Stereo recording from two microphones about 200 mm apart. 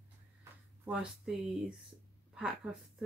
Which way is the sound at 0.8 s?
5° right (ahead or behind).